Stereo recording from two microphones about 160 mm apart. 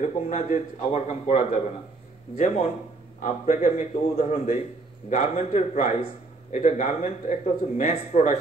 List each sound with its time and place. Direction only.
0.0 s speech: 50° left (ahead or behind)